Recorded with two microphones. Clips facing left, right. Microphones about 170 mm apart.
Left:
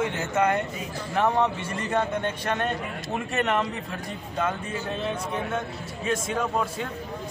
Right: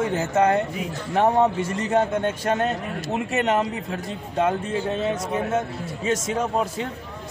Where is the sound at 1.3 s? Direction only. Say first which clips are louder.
Right 5 dB; 45° right (ahead or behind).